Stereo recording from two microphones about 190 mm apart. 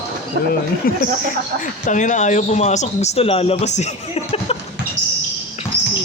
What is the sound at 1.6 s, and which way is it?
Speech, 40° left (ahead or behind).